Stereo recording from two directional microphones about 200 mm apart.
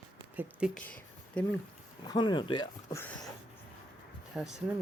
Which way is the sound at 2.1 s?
20° left (ahead or behind).